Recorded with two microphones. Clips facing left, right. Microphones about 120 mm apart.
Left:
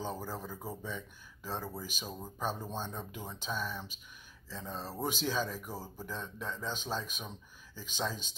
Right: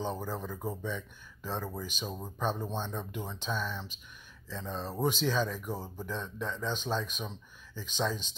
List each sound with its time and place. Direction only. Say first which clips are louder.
0.2 s speech: right 4 dB; 10° left (ahead or behind)
2.0 s speech: right 3 dB; 15° right (ahead or behind)
2.3 s speech: right 3 dB; 10° left (ahead or behind)